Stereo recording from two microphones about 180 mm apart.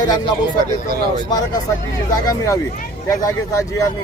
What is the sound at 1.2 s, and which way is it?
Speech, 20° left (ahead or behind).